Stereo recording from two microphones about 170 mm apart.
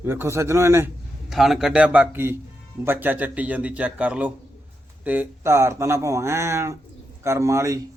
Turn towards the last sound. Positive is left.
turn(degrees=-20)  # may be behind; listen again after turning